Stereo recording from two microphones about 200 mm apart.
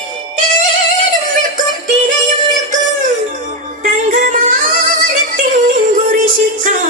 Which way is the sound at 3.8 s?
40° right (ahead or behind).